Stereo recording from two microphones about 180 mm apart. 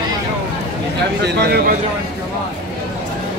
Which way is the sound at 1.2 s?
65° right (ahead or behind).